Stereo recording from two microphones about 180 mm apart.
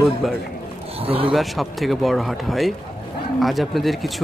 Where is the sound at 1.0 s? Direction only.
30° right (ahead or behind).